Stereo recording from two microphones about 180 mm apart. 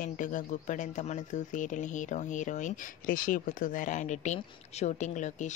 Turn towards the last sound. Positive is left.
turn(degrees=40)  # may be behind; listen again after turning